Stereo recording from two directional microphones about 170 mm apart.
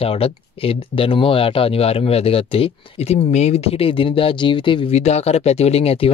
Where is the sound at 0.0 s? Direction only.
35° left (ahead or behind).